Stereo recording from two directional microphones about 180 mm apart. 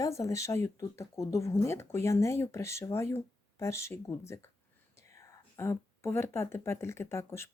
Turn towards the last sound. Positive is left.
turn(degrees=15)  # may be behind; listen again after turning